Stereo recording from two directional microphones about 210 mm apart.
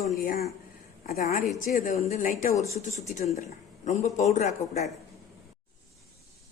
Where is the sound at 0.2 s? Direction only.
40° left (ahead or behind).